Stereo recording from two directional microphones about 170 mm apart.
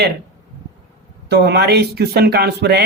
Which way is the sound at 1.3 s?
75° right (ahead or behind).